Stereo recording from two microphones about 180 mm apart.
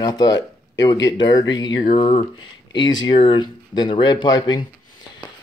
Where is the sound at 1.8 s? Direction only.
35° left (ahead or behind).